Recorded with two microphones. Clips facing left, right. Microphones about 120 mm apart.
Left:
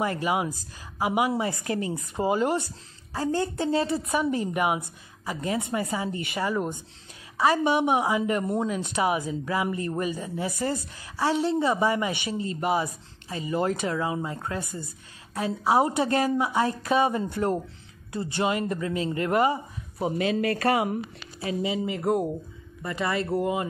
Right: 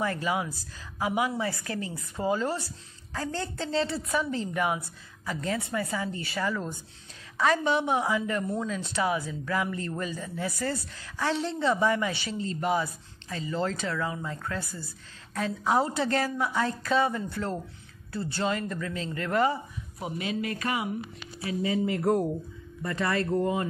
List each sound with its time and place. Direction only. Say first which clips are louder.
0.0 s speech: left 3 dB; 15° left (ahead or behind)
1.3 s speech: left 4 dB; 20° left (ahead or behind)
20.2 s speech: left 5 dB; 75° left (ahead or behind)
21.6 s speech: right 2 dB; 15° left (ahead or behind)